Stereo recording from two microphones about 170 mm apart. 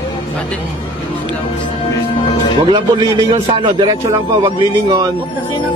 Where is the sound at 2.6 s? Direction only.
25° right (ahead or behind).